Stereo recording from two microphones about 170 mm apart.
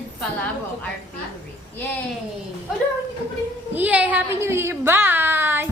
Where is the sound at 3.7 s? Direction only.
10° right (ahead or behind).